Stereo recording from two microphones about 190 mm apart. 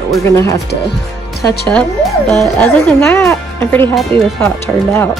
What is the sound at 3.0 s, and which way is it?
Speech, 15° left (ahead or behind).